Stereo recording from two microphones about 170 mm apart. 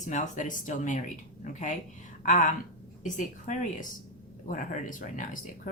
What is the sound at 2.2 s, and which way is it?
A woman's voice, 50° left (ahead or behind).